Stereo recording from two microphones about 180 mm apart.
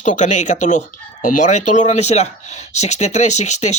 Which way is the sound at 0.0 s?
40° left (ahead or behind).